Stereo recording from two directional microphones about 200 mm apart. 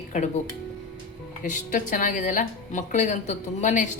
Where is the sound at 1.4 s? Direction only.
40° left (ahead or behind).